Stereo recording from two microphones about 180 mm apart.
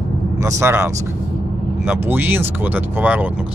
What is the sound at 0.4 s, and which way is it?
Speech, 15° right (ahead or behind).